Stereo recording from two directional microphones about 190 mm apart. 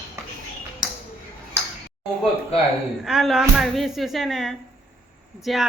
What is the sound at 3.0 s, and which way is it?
Speech, 5° right (ahead or behind).